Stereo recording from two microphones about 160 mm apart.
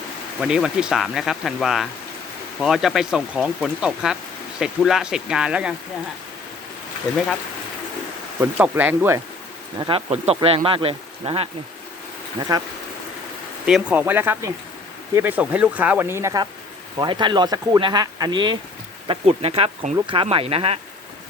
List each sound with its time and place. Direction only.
0.4 s speech: 5° right (ahead or behind)
8.4 s speech: 10° right (ahead or behind)
9.7 s speech: 25° right (ahead or behind)
10.1 s speech: 40° right (ahead or behind)
12.4 s speech: 25° right (ahead or behind)
13.7 s speech: 5° right (ahead or behind); by 20.7 s 40° right (ahead or behind)